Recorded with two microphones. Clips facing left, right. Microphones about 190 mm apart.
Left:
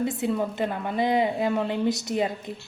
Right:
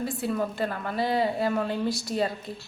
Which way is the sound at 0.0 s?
20° left (ahead or behind).